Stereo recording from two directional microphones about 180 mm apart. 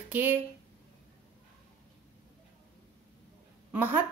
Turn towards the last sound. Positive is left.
turn(degrees=-10)  # may be behind; listen again after turning